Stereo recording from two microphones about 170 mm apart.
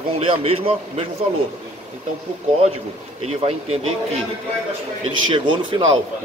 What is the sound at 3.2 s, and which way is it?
Speech, 40° right (ahead or behind).